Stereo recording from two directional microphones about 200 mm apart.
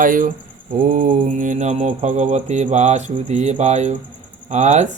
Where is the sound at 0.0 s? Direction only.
40° right (ahead or behind).